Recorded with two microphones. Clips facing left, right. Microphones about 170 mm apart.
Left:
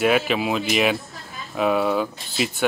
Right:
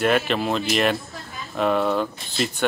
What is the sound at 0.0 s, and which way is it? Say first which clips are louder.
Speech: left 1 dB; 5° left (ahead or behind).